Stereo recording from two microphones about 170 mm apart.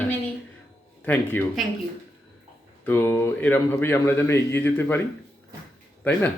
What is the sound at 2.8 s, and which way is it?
Speech, 15° left (ahead or behind).